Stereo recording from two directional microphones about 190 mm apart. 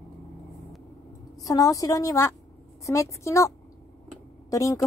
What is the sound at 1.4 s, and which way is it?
A woman's voice, 20° left (ahead or behind).